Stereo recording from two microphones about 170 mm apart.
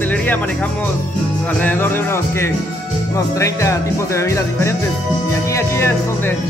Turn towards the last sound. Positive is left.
turn(degrees=15)  # may be behind; listen again after turning